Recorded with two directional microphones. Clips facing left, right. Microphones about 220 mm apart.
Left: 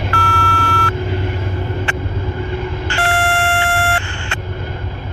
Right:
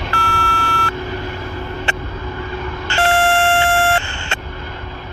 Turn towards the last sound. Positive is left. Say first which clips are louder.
# right 2 dB
turn(degrees=-25)  # may be behind; listen again after turning